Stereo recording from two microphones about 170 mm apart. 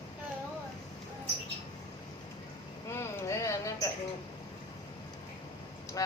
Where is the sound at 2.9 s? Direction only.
15° left (ahead or behind).